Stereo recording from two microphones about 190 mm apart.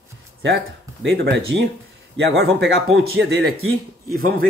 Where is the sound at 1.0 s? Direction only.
65° right (ahead or behind).